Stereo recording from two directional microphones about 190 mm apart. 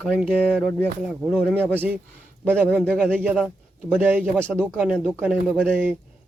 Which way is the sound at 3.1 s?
10° right (ahead or behind).